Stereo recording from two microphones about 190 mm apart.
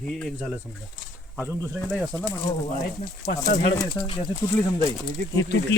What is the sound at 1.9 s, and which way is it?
Speech, 10° left (ahead or behind).